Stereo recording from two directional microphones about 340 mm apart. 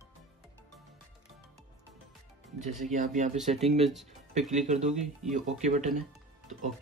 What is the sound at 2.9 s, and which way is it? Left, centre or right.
Speech, right.